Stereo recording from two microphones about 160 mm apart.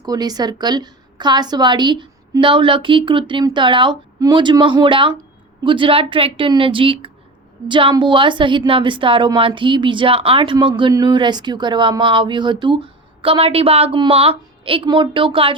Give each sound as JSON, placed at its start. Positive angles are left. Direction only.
{"t": 0.0, "sound": "a woman's voice", "side_deg": -25}